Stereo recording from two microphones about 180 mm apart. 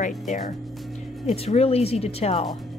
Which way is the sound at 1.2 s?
35° left (ahead or behind).